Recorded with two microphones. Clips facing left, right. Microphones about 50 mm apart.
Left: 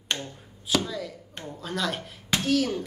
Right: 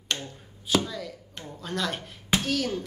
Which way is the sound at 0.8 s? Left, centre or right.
Centre.